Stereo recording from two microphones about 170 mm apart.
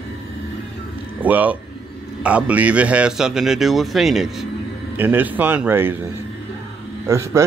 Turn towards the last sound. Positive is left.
turn(degrees=-15)  # may be behind; listen again after turning